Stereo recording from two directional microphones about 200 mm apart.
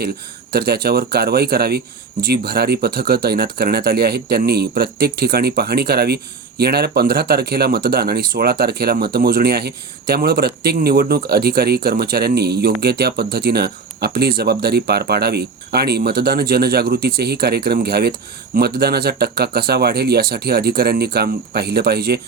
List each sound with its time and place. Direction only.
0.5 s speech: 50° right (ahead or behind)